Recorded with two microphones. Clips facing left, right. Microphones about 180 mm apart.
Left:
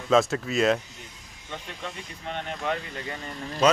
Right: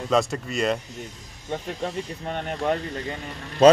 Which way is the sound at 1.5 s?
45° right (ahead or behind).